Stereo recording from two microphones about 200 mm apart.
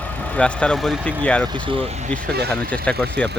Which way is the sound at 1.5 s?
25° right (ahead or behind).